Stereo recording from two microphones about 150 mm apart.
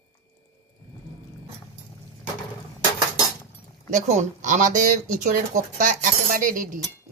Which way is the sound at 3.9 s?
50° right (ahead or behind).